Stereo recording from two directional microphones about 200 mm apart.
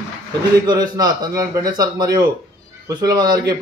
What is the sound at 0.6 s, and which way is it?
A man's voice, 20° right (ahead or behind).